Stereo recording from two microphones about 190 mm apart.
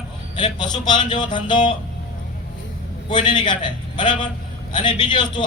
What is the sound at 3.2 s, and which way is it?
A man's voice, 25° left (ahead or behind).